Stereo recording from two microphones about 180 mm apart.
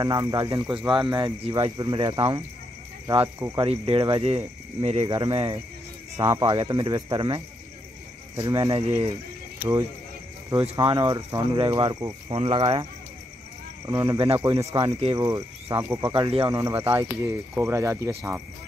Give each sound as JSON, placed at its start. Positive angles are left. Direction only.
{"t": 0.0, "sound": "speech", "side_deg": -25}
{"t": 3.5, "sound": "speech", "side_deg": -30}
{"t": 6.1, "sound": "speech", "side_deg": -15}
{"t": 9.6, "sound": "speech", "side_deg": -10}
{"t": 10.6, "sound": "speech", "side_deg": -25}
{"t": 13.8, "sound": "speech", "side_deg": -20}
{"t": 14.9, "sound": "speech", "side_deg": -35}
{"t": 15.1, "sound": "speech", "side_deg": -20}